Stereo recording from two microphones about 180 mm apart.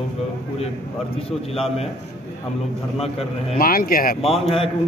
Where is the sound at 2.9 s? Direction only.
35° left (ahead or behind).